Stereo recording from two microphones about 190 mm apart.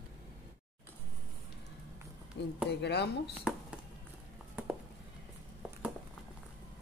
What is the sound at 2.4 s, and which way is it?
Speech, 60° left (ahead or behind).